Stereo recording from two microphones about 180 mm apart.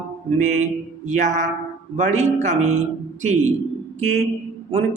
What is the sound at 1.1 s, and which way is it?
A woman's voice, 45° right (ahead or behind).